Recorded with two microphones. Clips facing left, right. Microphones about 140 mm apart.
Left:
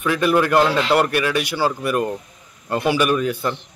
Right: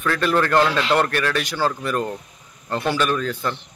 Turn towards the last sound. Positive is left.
turn(degrees=10)  # may be behind; listen again after turning